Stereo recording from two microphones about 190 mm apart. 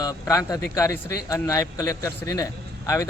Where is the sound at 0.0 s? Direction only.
20° left (ahead or behind).